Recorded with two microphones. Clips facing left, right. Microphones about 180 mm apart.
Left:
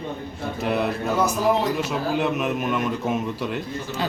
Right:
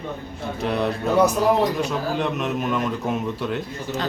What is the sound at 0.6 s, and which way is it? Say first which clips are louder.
A man's voice: right 1 dB; 5° left (ahead or behind).